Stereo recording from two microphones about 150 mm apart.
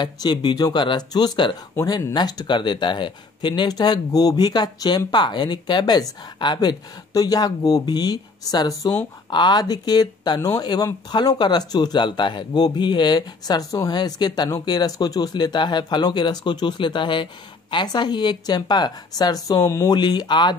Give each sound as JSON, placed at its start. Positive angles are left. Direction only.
{"t": 0.0, "sound": "speech", "side_deg": 30}